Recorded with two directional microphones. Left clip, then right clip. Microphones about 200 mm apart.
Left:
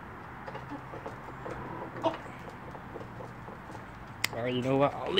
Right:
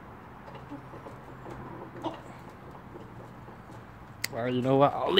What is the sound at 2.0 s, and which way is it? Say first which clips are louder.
Chicken: left 6 dB; 5° left (ahead or behind).